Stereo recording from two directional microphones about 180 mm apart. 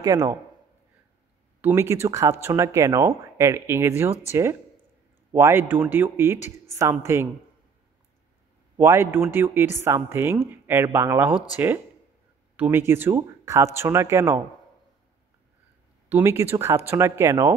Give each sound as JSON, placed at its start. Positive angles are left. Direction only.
{"t": 0.0, "sound": "a man's voice", "side_deg": -20}
{"t": 1.6, "sound": "a woman's voice", "side_deg": -15}
{"t": 8.7, "sound": "a woman's voice", "side_deg": -10}
{"t": 12.5, "sound": "a woman's voice", "side_deg": -10}
{"t": 16.1, "sound": "a woman's voice", "side_deg": -15}